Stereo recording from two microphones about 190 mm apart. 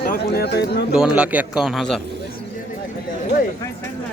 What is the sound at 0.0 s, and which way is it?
Speech, 55° left (ahead or behind).